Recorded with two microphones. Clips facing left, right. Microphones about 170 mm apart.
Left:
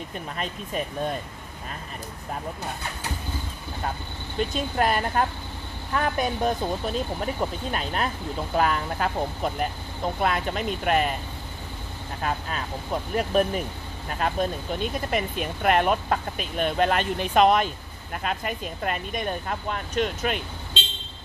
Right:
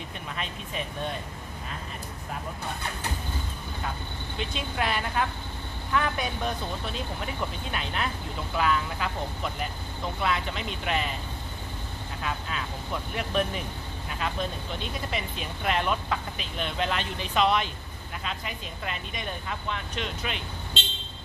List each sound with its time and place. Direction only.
0.4 s speech: 45° left (ahead or behind)
4.4 s speech: 45° left (ahead or behind)
12.2 s speech: 45° left (ahead or behind)